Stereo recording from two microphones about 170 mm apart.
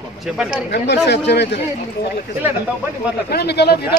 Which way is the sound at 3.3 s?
70° left (ahead or behind).